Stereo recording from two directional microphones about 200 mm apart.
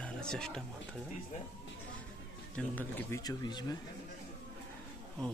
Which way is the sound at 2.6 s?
10° left (ahead or behind).